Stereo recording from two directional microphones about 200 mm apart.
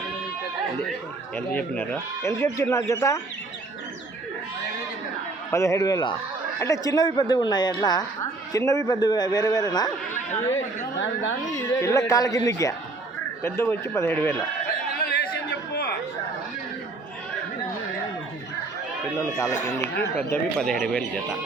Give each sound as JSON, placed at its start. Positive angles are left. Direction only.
{"t": 1.4, "sound": "speech", "side_deg": 10}
{"t": 5.5, "sound": "a woman's voice", "side_deg": 15}
{"t": 11.5, "sound": "speech", "side_deg": 15}
{"t": 14.9, "sound": "chatter", "side_deg": 50}
{"t": 19.1, "sound": "speech", "side_deg": 15}
{"t": 20.3, "sound": "speech", "side_deg": 5}